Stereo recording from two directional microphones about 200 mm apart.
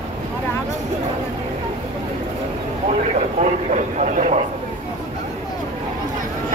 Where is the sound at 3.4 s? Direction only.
35° right (ahead or behind).